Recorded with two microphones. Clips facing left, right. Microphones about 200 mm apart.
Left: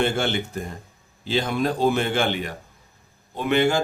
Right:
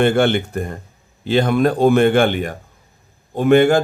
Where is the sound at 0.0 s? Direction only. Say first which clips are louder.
Right 8 dB; 55° right (ahead or behind).